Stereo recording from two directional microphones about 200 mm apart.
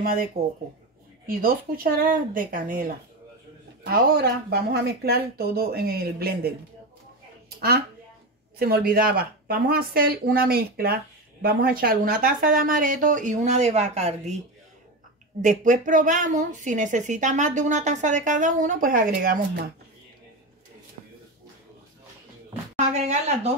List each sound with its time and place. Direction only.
0.4 s a woman's voice: 30° right (ahead or behind)
1.2 s speech: 45° right (ahead or behind)
8.5 s speech: 50° right (ahead or behind); by 14.3 s 30° right (ahead or behind)
15.4 s a woman's voice: 40° right (ahead or behind)
22.8 s a woman's voice: 35° right (ahead or behind)